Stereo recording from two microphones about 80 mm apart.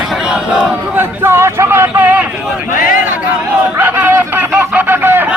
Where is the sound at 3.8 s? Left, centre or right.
Right.